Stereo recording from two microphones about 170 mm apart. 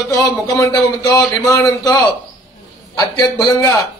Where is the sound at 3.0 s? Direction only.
25° left (ahead or behind).